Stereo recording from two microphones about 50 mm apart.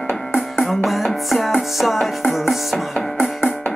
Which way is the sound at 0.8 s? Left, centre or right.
Centre.